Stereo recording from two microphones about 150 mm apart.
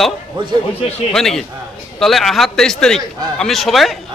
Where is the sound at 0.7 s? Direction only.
45° left (ahead or behind).